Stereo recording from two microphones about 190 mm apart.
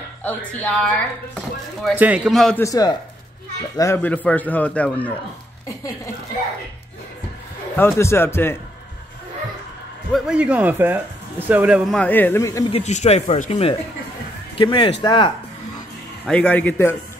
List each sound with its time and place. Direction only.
0.2 s speech: 10° left (ahead or behind)
2.0 s a man's voice: 5° right (ahead or behind)
2.6 s speech: 20° left (ahead or behind)
7.7 s speech: 10° left (ahead or behind)
10.1 s speech: 5° right (ahead or behind)
12.0 s speech: 10° left (ahead or behind)
12.7 s speech: 35° left (ahead or behind)
16.3 s speech: 5° left (ahead or behind)